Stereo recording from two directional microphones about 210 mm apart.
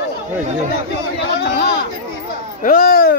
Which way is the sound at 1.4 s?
50° left (ahead or behind).